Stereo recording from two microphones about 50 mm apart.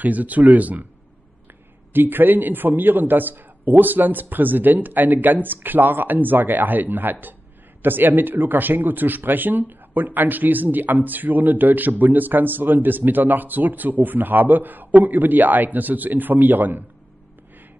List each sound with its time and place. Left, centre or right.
0.0 s a man's voice: right
1.9 s a man's voice: right